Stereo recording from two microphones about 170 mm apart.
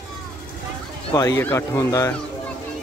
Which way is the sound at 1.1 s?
15° left (ahead or behind).